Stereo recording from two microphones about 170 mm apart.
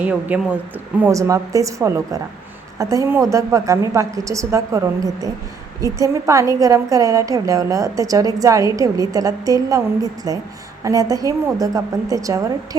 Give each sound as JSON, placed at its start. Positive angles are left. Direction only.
{"t": 0.0, "sound": "a woman's voice", "side_deg": -10}